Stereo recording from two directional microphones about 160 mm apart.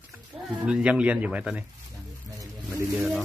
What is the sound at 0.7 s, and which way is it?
Speech, 5° right (ahead or behind).